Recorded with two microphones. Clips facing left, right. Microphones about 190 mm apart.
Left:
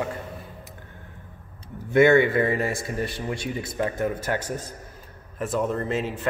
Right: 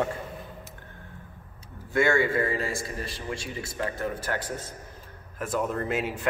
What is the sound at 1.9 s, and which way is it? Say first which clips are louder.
Speech: left 7 dB; 20° left (ahead or behind).